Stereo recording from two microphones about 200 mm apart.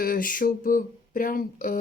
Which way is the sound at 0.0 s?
45° left (ahead or behind).